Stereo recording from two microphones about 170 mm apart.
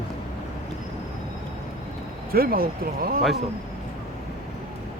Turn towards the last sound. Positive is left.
turn(degrees=-60)  # may be behind; listen again after turning